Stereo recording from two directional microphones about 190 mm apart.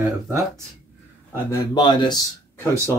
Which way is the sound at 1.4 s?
25° left (ahead or behind).